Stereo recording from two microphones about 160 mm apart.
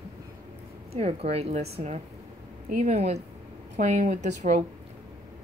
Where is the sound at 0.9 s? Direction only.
40° right (ahead or behind).